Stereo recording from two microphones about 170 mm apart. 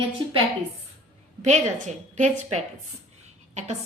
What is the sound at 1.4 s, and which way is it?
A woman's voice, 45° right (ahead or behind).